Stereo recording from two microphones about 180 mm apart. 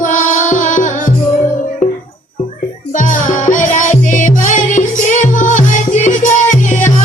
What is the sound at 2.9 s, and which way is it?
Music, 45° left (ahead or behind).